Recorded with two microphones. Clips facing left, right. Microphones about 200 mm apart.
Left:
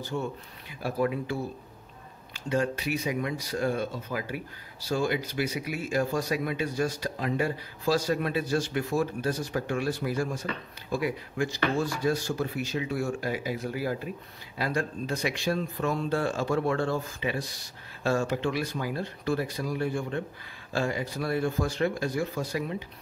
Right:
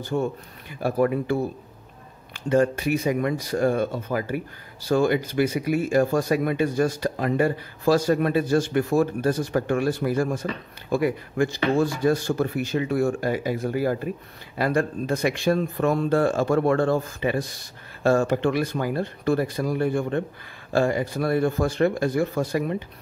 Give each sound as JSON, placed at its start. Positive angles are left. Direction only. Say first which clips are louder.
{"t": 0.0, "sound": "speech", "louder": "right 7 dB", "side_deg": -50}